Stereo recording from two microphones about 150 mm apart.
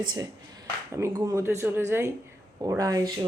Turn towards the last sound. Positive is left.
turn(degrees=-25)  # may be behind; listen again after turning